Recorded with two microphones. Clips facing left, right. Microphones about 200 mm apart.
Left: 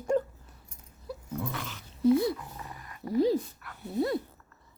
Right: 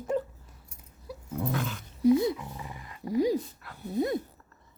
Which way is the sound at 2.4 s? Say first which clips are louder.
Right 2 dB; 10° right (ahead or behind).